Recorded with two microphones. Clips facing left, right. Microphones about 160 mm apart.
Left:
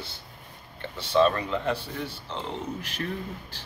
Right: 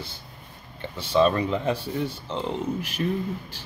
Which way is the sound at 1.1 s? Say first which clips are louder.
Right 2 dB; 15° right (ahead or behind).